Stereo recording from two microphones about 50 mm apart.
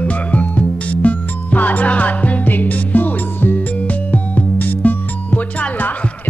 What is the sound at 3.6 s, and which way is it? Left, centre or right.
Music, left.